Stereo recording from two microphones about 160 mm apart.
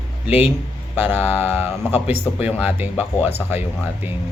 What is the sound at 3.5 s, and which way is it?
Speech, 10° right (ahead or behind).